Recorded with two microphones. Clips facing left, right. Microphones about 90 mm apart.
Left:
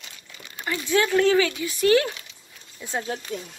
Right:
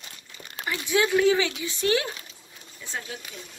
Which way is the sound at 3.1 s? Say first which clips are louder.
Left 6 dB; 50° left (ahead or behind).